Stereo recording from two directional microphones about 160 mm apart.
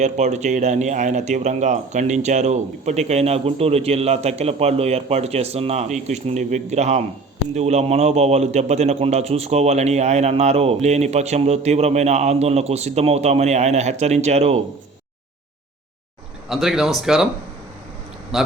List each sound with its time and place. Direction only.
0.0 s a man's voice: 45° right (ahead or behind)
16.5 s speech: centre (ahead or behind)
18.3 s speech: centre (ahead or behind)